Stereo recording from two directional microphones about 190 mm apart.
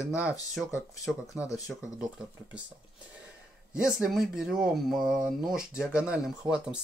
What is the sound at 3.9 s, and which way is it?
Speech, 5° right (ahead or behind).